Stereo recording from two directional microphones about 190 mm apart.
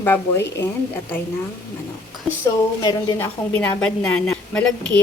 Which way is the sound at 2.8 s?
20° left (ahead or behind).